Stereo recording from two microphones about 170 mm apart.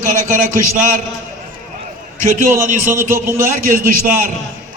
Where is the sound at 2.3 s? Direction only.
50° right (ahead or behind).